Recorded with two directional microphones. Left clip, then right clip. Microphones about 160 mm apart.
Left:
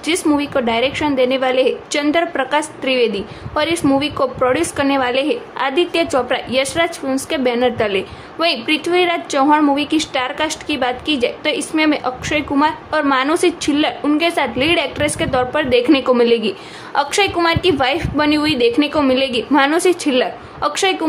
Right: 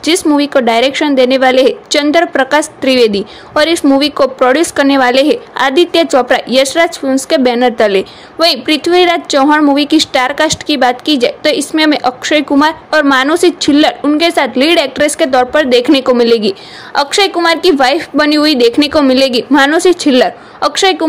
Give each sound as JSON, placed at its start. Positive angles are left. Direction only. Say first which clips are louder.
{"t": 0.0, "sound": "a woman's voice", "louder": "right 7 dB", "side_deg": -35}